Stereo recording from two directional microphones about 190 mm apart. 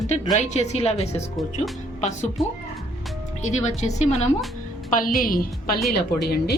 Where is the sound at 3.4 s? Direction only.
40° left (ahead or behind); by 6.6 s 55° left (ahead or behind).